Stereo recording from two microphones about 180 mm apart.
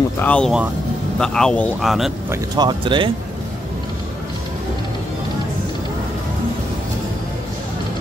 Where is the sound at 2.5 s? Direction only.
25° right (ahead or behind).